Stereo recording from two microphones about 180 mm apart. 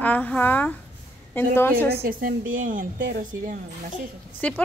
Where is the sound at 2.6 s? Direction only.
50° right (ahead or behind).